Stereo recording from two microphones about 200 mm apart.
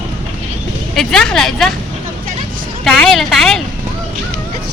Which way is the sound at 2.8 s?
Centre (ahead or behind).